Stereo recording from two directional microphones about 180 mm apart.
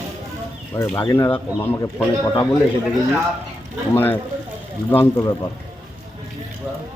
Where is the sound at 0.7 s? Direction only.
15° left (ahead or behind).